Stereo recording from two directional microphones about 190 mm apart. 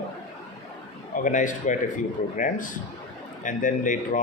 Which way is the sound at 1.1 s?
40° left (ahead or behind).